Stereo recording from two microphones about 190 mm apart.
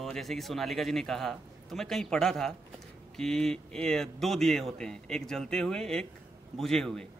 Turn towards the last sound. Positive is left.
turn(degrees=5)  # may be behind; listen again after turning